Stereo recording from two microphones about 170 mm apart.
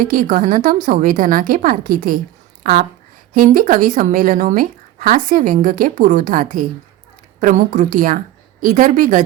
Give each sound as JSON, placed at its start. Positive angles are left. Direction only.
{"t": 0.0, "sound": "speech", "side_deg": -50}